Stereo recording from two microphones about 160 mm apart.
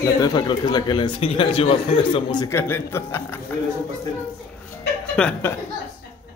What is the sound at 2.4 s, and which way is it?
Speech, 15° left (ahead or behind).